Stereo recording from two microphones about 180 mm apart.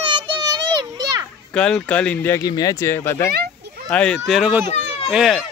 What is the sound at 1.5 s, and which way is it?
A child's voice, 5° left (ahead or behind).